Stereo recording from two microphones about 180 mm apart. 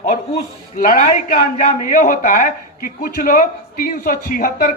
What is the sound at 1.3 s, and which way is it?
Speech, 45° left (ahead or behind).